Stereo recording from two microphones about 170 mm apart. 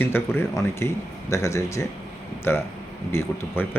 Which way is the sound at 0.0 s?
15° left (ahead or behind).